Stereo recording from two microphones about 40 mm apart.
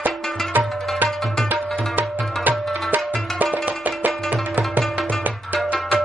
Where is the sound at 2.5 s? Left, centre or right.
Right.